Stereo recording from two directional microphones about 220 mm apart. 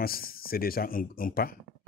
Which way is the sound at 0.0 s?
40° left (ahead or behind).